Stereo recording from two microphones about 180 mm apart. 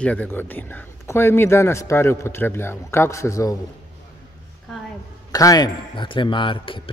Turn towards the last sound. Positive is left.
turn(degrees=30)  # may be behind; listen again after turning